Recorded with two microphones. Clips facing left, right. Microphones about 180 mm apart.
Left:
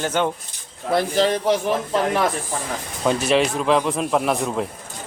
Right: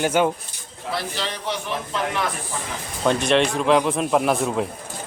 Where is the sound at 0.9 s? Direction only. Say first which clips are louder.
Left 10 dB; 50° left (ahead or behind).